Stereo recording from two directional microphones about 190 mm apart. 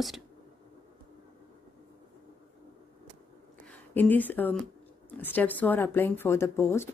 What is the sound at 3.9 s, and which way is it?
Speech, 10° left (ahead or behind).